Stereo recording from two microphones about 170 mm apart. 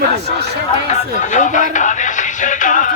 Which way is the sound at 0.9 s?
45° left (ahead or behind).